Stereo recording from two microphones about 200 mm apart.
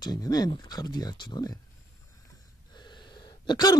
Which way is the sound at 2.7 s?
20° left (ahead or behind).